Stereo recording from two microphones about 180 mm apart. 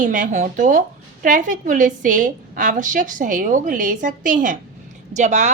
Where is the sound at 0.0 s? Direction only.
45° right (ahead or behind).